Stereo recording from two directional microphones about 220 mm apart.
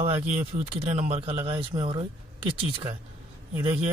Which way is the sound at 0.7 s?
30° right (ahead or behind).